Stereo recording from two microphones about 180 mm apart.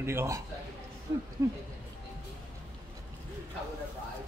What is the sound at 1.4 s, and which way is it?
Speech, 15° right (ahead or behind).